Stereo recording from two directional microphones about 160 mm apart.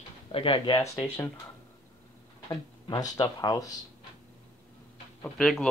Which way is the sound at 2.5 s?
25° left (ahead or behind).